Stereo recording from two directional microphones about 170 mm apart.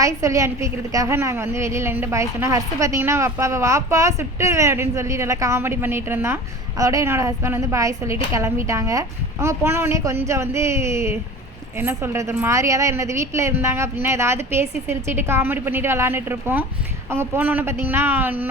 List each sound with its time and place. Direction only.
0.0 s a woman's voice: 20° right (ahead or behind)